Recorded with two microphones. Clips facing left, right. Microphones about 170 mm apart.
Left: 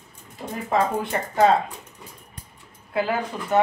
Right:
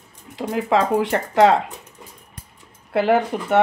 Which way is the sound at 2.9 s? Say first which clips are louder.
Right 7 dB; 75° right (ahead or behind).